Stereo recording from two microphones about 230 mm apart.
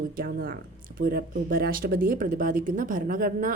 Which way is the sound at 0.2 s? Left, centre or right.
Right.